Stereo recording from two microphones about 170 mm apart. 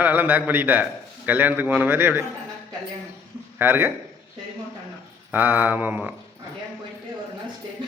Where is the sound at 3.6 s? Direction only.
10° right (ahead or behind).